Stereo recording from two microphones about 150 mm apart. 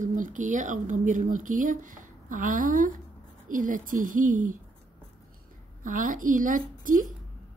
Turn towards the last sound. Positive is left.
turn(degrees=-65)  # may be behind; listen again after turning